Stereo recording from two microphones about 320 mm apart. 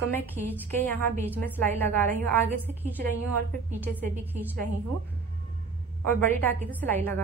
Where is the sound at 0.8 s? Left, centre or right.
Centre.